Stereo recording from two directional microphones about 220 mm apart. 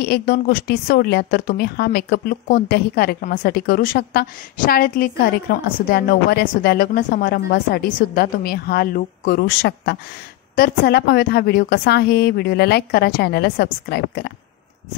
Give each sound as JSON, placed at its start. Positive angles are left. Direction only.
{"t": 0.0, "sound": "a woman's voice", "side_deg": 45}